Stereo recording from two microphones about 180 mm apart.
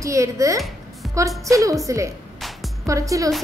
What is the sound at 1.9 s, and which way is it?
A woman's voice, 15° right (ahead or behind).